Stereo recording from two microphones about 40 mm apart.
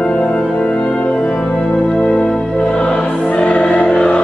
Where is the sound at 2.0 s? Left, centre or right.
Left.